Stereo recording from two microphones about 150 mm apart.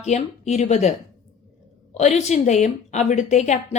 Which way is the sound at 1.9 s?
50° left (ahead or behind).